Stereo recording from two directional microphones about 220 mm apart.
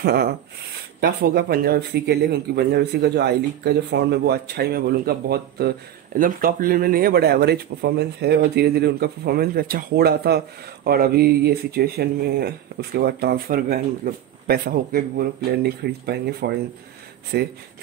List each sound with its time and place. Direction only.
0.0 s speech: 45° right (ahead or behind)